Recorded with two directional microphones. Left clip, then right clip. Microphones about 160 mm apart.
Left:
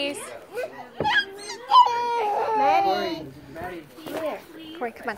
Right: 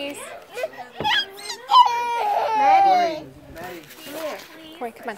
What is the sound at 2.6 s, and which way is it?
Speech, 20° left (ahead or behind).